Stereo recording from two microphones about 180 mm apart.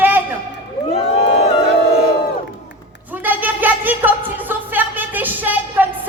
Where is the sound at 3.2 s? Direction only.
10° right (ahead or behind).